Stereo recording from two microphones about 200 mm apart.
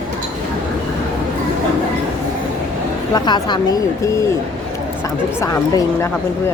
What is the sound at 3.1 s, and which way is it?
Speech, 20° left (ahead or behind).